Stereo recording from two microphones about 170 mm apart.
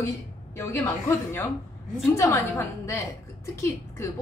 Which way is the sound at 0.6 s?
15° left (ahead or behind).